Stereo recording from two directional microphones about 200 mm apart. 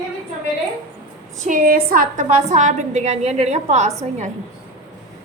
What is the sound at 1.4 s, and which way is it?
A woman's voice, 45° right (ahead or behind).